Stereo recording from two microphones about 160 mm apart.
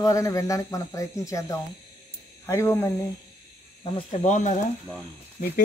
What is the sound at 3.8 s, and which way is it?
Speech, 35° left (ahead or behind).